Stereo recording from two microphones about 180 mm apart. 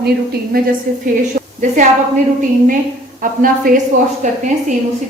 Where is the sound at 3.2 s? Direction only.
50° right (ahead or behind).